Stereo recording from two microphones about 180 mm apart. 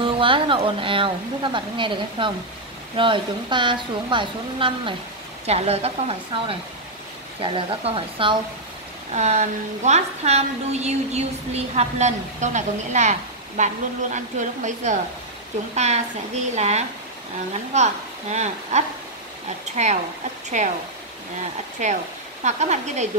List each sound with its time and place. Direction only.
0.0 s a woman's voice: 30° right (ahead or behind)
9.1 s a woman's voice: 40° right (ahead or behind)
20.4 s a woman's voice: 40° right (ahead or behind)
21.8 s a woman's voice: 40° right (ahead or behind)